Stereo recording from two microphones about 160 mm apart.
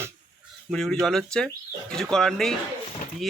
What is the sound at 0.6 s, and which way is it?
Speech, 5° left (ahead or behind).